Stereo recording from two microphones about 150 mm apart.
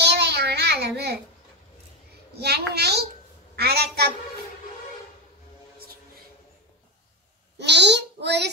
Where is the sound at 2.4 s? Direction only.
90° right.